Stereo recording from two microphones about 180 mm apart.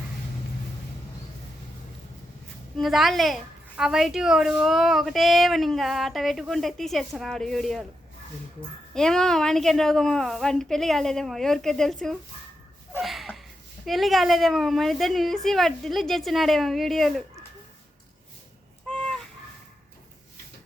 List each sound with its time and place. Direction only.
2.7 s a woman's voice: centre (ahead or behind)
9.0 s a woman's voice: 5° left (ahead or behind)
13.0 s a sound: centre (ahead or behind)
13.8 s a woman's voice: centre (ahead or behind)
18.9 s goose: 5° left (ahead or behind)